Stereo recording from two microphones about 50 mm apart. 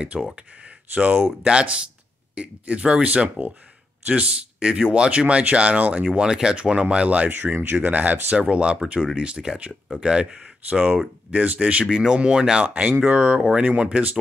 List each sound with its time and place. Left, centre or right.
0.1 s speech: centre
0.9 s speech: right
6.2 s speech: centre
11.8 s speech: centre